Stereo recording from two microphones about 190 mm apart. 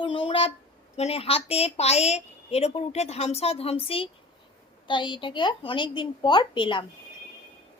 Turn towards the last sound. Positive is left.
turn(degrees=25)  # may be behind; listen again after turning